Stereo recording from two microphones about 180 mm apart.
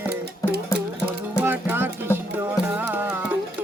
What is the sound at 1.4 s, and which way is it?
Music, 10° right (ahead or behind).